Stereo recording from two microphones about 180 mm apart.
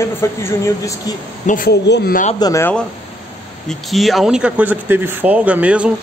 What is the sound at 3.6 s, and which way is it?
Speech, centre (ahead or behind).